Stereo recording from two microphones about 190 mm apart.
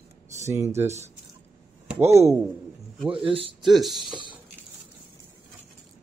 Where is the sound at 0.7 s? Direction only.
35° right (ahead or behind).